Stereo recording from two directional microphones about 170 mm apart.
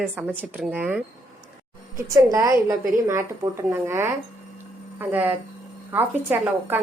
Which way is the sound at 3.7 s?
15° right (ahead or behind).